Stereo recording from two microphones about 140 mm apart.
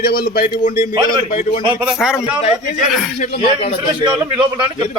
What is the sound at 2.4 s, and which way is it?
Speech, 65° left (ahead or behind).